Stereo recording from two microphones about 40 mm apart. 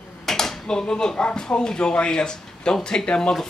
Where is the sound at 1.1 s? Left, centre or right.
Left.